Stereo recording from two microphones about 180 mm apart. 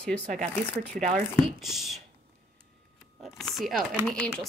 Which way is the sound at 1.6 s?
Centre (ahead or behind).